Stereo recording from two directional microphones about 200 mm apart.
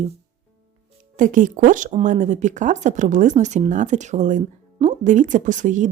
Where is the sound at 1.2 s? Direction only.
40° right (ahead or behind).